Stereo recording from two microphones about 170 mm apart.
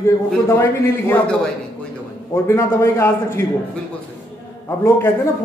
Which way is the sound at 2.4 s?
15° left (ahead or behind).